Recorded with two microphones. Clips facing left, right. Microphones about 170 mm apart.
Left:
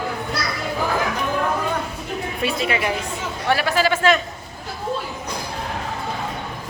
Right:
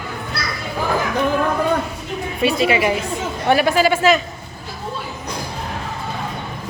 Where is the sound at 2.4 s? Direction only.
5° right (ahead or behind).